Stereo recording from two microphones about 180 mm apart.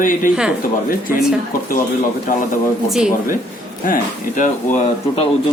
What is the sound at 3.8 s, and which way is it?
Speech, 50° left (ahead or behind).